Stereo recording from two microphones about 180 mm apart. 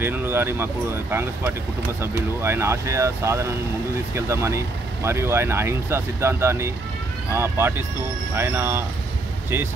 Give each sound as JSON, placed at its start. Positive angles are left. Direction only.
{"t": 0.0, "sound": "speech", "side_deg": -10}
{"t": 2.0, "sound": "speech", "side_deg": -15}